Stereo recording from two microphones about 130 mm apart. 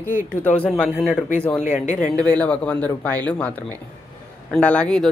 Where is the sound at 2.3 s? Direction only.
10° left (ahead or behind).